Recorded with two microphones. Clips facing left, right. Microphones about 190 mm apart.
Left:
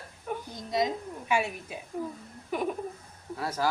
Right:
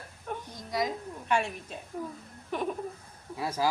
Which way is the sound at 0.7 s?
25° left (ahead or behind).